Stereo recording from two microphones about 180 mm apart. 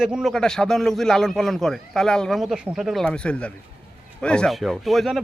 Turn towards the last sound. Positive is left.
turn(degrees=0)  # may be behind; listen again after turning